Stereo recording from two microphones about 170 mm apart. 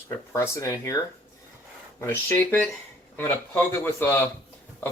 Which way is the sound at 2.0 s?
10° left (ahead or behind).